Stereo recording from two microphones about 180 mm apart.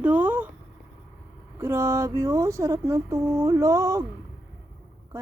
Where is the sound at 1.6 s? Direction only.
15° right (ahead or behind).